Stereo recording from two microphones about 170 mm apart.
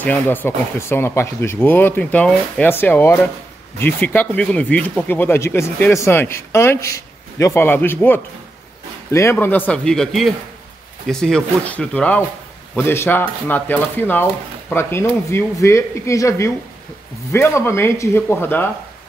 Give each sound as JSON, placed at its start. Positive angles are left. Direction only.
{"t": 0.0, "sound": "speech", "side_deg": 10}